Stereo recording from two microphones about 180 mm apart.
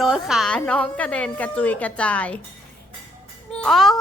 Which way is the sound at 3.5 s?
5° left (ahead or behind).